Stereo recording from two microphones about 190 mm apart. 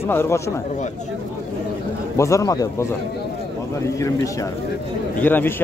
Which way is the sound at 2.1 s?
15° left (ahead or behind).